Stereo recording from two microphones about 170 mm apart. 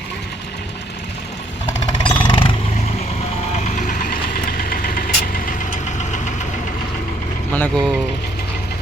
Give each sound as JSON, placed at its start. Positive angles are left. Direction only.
{"t": 2.0, "sound": "vehicle", "side_deg": 30}
{"t": 3.8, "sound": "vehicle", "side_deg": 50}
{"t": 7.5, "sound": "speech", "side_deg": 10}